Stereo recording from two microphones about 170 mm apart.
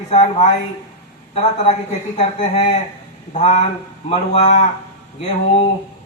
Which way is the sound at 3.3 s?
40° left (ahead or behind).